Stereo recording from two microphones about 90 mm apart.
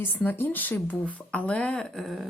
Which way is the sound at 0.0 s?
20° left (ahead or behind).